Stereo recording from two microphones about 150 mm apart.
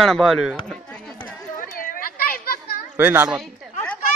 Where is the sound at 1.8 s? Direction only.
70° left (ahead or behind); by 2.5 s 90° left.